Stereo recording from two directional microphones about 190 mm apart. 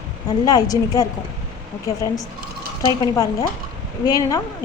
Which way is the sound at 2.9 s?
20° left (ahead or behind).